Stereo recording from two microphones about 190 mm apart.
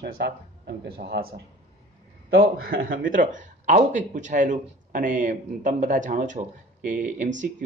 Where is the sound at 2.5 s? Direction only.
50° right (ahead or behind).